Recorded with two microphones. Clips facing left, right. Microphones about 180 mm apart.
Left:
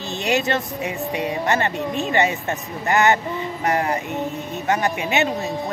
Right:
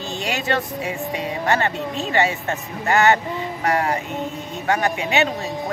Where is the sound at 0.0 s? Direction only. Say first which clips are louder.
Left 4 dB; 20° left (ahead or behind).